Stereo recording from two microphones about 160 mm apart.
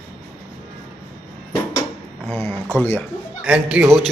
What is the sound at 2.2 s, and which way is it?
Speech, 10° left (ahead or behind).